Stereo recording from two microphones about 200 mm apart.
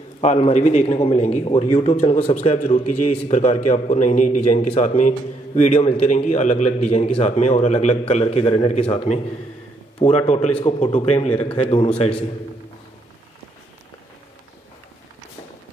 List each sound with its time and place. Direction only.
0.2 s a man's voice: 35° left (ahead or behind)